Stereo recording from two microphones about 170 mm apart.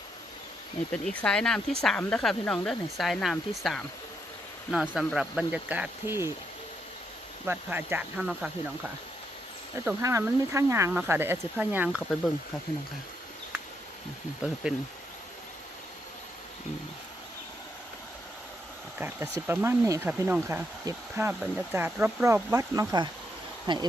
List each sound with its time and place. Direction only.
1.0 s speech: 5° left (ahead or behind); by 6.3 s 15° right (ahead or behind)
7.4 s speech: 10° right (ahead or behind)
9.7 s speech: 15° right (ahead or behind)
14.4 s speech: 5° right (ahead or behind)
18.9 s speech: 10° right (ahead or behind)